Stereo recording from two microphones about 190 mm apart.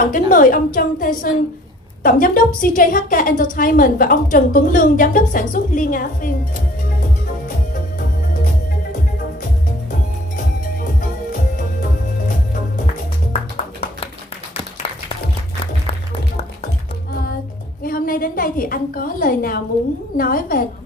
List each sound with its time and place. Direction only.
0.1 s a woman's voice: 45° left (ahead or behind)
10.3 s music: 45° left (ahead or behind)
17.8 s a woman's voice: 50° left (ahead or behind)